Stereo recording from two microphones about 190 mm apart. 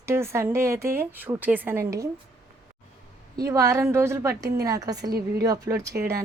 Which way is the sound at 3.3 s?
15° right (ahead or behind).